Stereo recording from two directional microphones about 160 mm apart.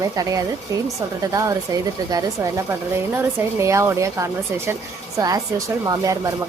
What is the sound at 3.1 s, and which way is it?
Speech, 20° right (ahead or behind).